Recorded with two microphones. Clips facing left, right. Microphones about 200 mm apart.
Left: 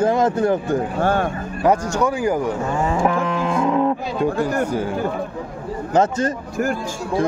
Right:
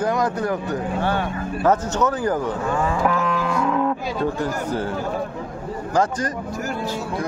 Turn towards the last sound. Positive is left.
turn(degrees=25)  # may be behind; listen again after turning